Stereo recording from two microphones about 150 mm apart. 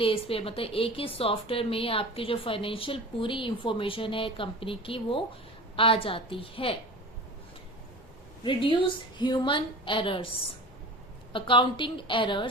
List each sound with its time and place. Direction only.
0.0 s a woman's voice: 40° left (ahead or behind)
8.4 s a woman's voice: 35° left (ahead or behind)
11.3 s a woman's voice: 35° left (ahead or behind)